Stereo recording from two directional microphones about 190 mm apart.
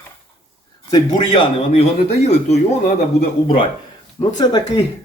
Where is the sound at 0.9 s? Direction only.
25° left (ahead or behind).